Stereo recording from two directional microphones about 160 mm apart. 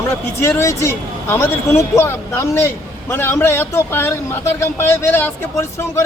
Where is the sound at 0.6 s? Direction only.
15° left (ahead or behind).